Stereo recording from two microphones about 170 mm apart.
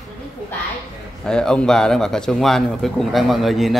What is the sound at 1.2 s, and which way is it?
A man's voice, 5° left (ahead or behind).